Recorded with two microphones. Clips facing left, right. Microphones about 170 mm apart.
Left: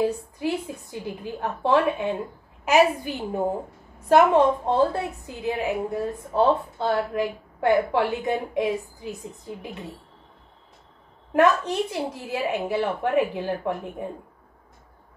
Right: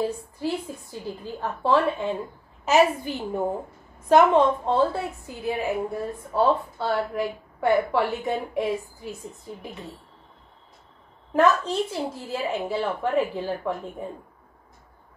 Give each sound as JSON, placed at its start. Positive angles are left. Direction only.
{"t": 0.0, "sound": "a woman's voice", "side_deg": 15}
{"t": 11.3, "sound": "a woman's voice", "side_deg": 15}